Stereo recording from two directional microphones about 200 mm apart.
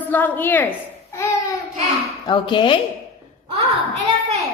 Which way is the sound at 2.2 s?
25° left (ahead or behind).